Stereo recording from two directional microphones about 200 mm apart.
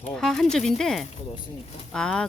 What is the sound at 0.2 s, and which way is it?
Speech, 5° left (ahead or behind).